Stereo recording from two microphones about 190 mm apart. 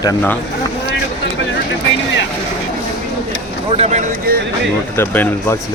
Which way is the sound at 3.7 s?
35° right (ahead or behind).